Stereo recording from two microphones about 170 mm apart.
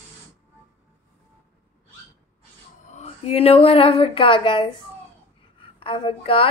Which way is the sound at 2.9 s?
40° left (ahead or behind).